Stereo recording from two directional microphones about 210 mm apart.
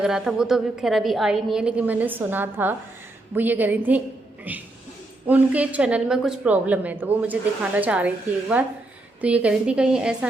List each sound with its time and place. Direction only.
0.0 s a woman's voice: 5° right (ahead or behind)